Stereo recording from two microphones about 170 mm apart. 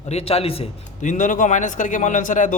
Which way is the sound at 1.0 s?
50° left (ahead or behind).